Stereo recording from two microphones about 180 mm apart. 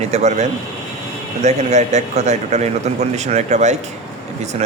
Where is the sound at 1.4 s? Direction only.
40° right (ahead or behind).